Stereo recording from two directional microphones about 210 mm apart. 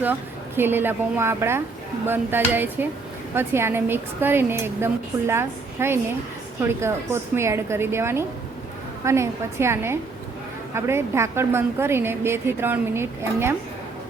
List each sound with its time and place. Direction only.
0.0 s a woman's voice: 10° right (ahead or behind)